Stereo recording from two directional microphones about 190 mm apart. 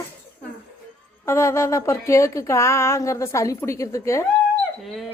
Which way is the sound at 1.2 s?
15° left (ahead or behind).